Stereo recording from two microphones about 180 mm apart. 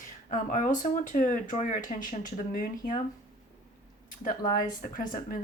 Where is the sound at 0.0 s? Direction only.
45° left (ahead or behind).